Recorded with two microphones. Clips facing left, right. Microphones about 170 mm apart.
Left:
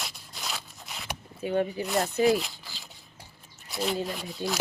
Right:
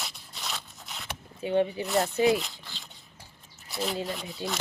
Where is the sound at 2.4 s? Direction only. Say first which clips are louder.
Left 1 dB; 5° left (ahead or behind).